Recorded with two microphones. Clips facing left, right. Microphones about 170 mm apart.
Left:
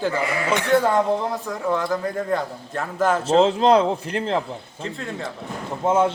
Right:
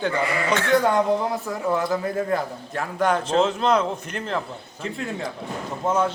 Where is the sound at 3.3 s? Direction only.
30° left (ahead or behind).